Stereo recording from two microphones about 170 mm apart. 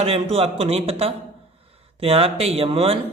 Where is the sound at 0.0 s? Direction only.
35° right (ahead or behind).